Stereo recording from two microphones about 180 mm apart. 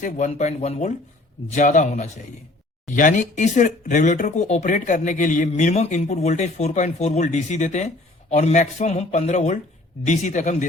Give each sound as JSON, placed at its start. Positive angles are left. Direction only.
{"t": 0.0, "sound": "a man's voice", "side_deg": 40}